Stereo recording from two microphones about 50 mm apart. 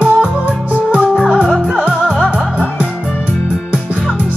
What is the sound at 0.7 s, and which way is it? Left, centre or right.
Music, right.